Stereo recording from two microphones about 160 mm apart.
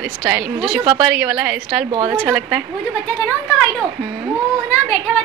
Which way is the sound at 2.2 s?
10° right (ahead or behind).